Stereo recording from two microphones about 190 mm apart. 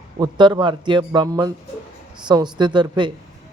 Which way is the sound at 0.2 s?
20° right (ahead or behind).